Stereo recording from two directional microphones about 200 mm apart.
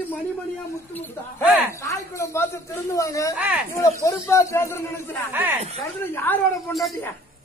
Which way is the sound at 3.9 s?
15° left (ahead or behind).